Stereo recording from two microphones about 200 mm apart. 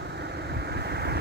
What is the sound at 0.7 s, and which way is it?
Vehicle, 55° right (ahead or behind).